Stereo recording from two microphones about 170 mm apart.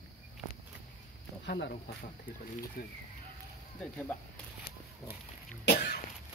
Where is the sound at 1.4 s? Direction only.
90° left.